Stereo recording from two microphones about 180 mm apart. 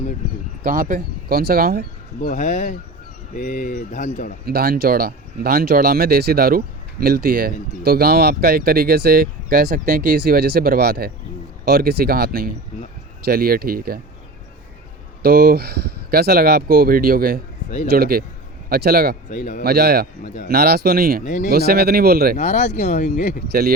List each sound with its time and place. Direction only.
0.6 s speech: 50° right (ahead or behind)
2.2 s speech: 45° left (ahead or behind)
4.4 s speech: 60° right (ahead or behind)
15.2 s speech: 55° right (ahead or behind)
19.3 s speech: 45° left (ahead or behind)
19.6 s speech: 60° right (ahead or behind)
20.2 s speech: 45° left (ahead or behind)
20.5 s speech: 60° right (ahead or behind)
21.2 s speech: 45° left (ahead or behind)
21.5 s speech: 60° right (ahead or behind)
22.4 s speech: 40° left (ahead or behind)
23.5 s speech: 60° right (ahead or behind)